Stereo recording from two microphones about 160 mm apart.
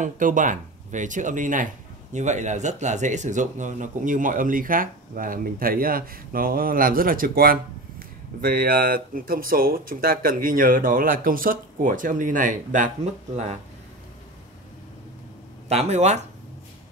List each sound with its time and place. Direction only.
0.0 s speech: 55° right (ahead or behind)
15.7 s speech: 45° right (ahead or behind)